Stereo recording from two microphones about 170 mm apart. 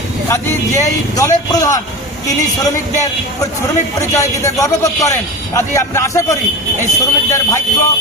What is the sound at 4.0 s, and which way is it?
A man's voice, 15° left (ahead or behind).